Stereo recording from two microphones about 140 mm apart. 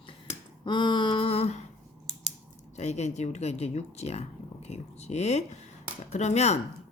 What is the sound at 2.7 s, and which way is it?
Speech, 50° left (ahead or behind).